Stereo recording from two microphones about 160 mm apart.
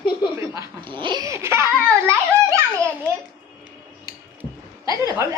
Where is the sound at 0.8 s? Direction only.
30° right (ahead or behind).